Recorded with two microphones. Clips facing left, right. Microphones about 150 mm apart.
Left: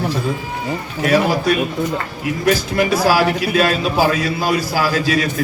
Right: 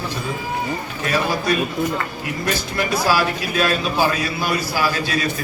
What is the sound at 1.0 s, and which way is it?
Speech, 75° left (ahead or behind).